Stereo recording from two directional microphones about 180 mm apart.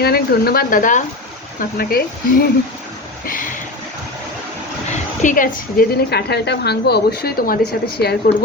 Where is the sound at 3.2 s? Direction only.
50° left (ahead or behind).